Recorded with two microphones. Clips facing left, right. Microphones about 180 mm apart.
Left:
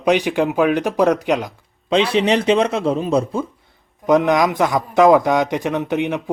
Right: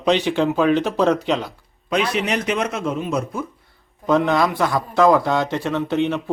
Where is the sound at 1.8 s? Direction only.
30° left (ahead or behind).